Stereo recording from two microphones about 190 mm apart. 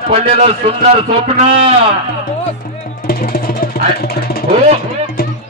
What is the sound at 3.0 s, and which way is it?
Music, 50° left (ahead or behind).